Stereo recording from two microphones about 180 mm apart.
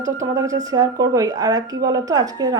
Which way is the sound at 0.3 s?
20° right (ahead or behind).